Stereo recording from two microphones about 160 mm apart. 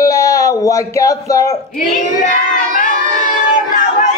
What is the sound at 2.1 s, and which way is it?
Child singing, 55° left (ahead or behind).